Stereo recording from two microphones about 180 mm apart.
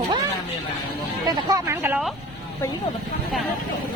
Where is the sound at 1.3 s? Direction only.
20° right (ahead or behind).